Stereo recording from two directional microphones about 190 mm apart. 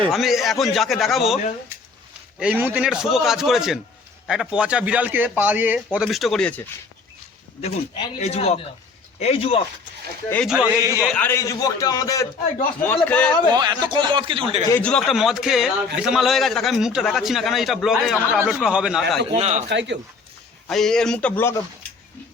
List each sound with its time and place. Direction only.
0.1 s a man's voice: centre (ahead or behind)
2.4 s a man's voice: 10° right (ahead or behind)
7.6 s speech: 30° left (ahead or behind)
10.4 s a man's voice: 5° right (ahead or behind)
13.5 s a man's voice: 20° right (ahead or behind)
14.7 s a man's voice: 5° left (ahead or behind)
19.3 s a man's voice: 35° right (ahead or behind)
19.6 s speech: 65° right (ahead or behind)
20.7 s a man's voice: centre (ahead or behind)